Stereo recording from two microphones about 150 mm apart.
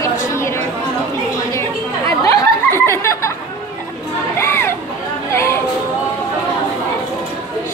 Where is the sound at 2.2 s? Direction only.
20° left (ahead or behind).